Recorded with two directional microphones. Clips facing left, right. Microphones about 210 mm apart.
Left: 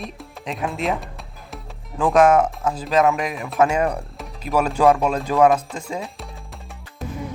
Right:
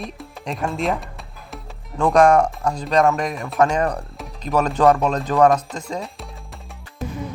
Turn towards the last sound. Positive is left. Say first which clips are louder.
# right 2 dB
turn(degrees=0)  # may be behind; listen again after turning